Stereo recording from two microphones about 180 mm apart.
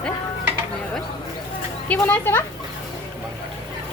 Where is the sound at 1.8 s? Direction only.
10° left (ahead or behind).